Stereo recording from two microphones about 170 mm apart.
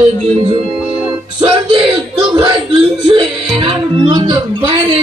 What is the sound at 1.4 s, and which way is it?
Speech, 30° right (ahead or behind).